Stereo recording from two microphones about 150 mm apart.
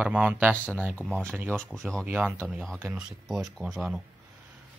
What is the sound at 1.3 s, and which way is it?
Speech, 15° right (ahead or behind).